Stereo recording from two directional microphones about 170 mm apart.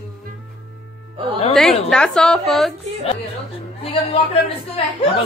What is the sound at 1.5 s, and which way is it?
A woman's voice, centre (ahead or behind).